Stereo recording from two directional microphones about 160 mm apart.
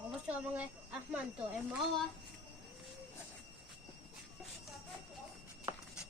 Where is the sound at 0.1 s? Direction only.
10° right (ahead or behind).